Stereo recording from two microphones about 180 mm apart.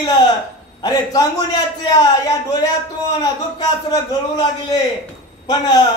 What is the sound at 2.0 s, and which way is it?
Speech, 20° left (ahead or behind).